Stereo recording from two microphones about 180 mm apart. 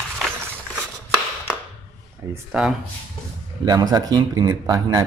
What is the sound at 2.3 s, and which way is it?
Speech, 5° right (ahead or behind).